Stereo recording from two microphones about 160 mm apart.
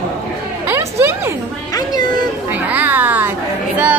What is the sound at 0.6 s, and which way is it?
Speech, 15° right (ahead or behind).